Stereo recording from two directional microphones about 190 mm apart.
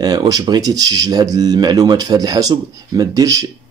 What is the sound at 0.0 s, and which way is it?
Speech, 20° right (ahead or behind).